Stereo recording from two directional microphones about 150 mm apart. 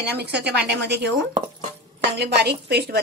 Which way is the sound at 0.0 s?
90° right.